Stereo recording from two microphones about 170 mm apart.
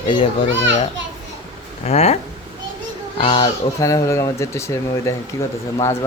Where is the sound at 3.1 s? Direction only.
30° left (ahead or behind).